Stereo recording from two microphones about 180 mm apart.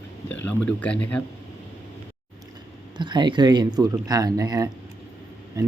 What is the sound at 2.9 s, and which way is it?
Speech, 25° right (ahead or behind).